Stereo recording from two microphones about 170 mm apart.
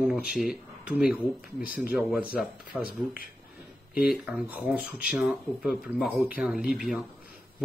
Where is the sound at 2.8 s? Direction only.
60° left (ahead or behind).